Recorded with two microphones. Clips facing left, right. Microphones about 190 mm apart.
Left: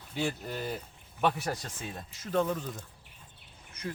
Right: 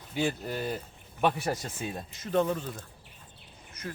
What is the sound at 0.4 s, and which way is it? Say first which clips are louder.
Speech: right 3 dB; 5° right (ahead or behind).